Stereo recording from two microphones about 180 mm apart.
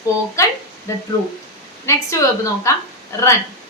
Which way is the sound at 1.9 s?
15° left (ahead or behind).